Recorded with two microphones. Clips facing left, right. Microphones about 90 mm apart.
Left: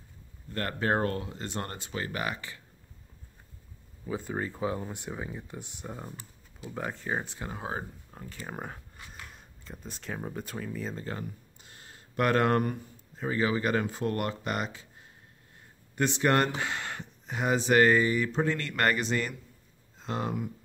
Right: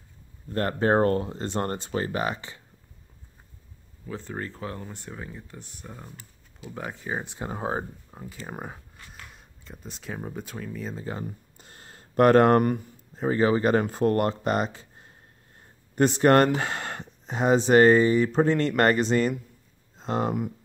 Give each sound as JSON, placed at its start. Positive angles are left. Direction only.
{"t": 0.5, "sound": "speech", "side_deg": -30}
{"t": 4.0, "sound": "speech", "side_deg": 10}
{"t": 6.7, "sound": "speech", "side_deg": 0}
{"t": 7.2, "sound": "speech", "side_deg": -25}
{"t": 7.5, "sound": "speech", "side_deg": -35}
{"t": 8.1, "sound": "speech", "side_deg": -10}
{"t": 8.9, "sound": "a sound", "side_deg": 15}
{"t": 9.3, "sound": "speech", "side_deg": 0}
{"t": 11.5, "sound": "a sound", "side_deg": -40}
{"t": 13.2, "sound": "speech", "side_deg": -35}
{"t": 15.9, "sound": "speech", "side_deg": -40}